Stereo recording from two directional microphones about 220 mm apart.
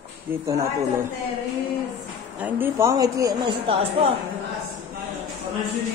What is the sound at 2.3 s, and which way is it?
Speech, 10° right (ahead or behind).